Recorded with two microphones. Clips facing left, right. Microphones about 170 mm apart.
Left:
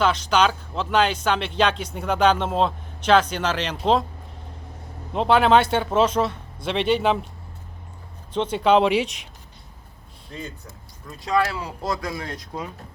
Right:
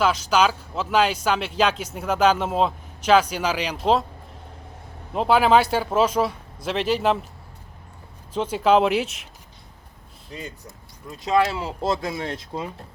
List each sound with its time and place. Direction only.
0.0 s speech: 5° right (ahead or behind)
5.1 s speech: 5° right (ahead or behind)
8.3 s speech: 5° right (ahead or behind)
11.3 s speech: 25° right (ahead or behind)